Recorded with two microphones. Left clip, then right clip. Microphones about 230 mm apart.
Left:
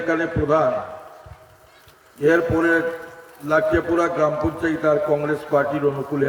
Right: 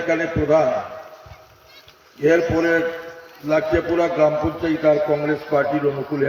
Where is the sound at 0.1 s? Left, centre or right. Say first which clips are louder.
Right 2 dB; right.